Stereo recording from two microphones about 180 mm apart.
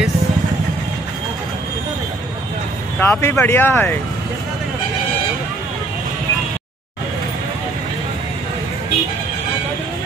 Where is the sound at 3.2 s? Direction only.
15° left (ahead or behind).